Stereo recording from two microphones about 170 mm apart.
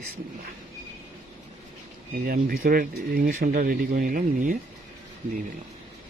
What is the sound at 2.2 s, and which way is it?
Speech, 60° right (ahead or behind).